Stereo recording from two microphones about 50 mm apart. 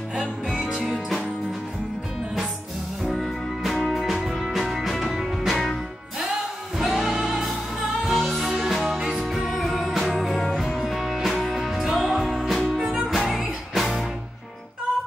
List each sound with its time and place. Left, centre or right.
0.1 s music: centre
0.8 s music: centre
3.1 s music: centre
6.8 s music: centre